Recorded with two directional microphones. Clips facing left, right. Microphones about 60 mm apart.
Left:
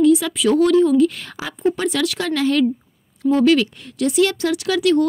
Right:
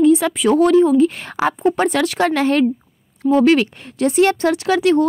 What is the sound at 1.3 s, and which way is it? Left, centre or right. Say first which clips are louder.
Speech: right 5 dB; right.